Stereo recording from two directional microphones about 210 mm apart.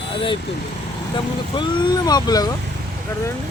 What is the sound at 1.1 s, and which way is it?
Speech, 20° left (ahead or behind).